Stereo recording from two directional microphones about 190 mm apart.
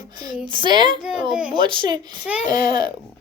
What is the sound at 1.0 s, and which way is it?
Speech, 5° right (ahead or behind).